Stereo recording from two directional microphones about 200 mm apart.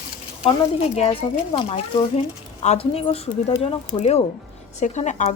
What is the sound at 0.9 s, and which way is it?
Speech, 30° left (ahead or behind).